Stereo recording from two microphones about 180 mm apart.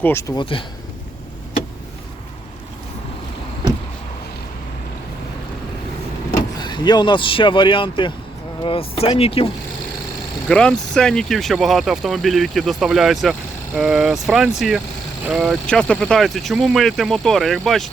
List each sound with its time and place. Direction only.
0.0 s speech: 15° left (ahead or behind)
6.6 s speech: 25° left (ahead or behind)
10.5 s speech: 5° left (ahead or behind)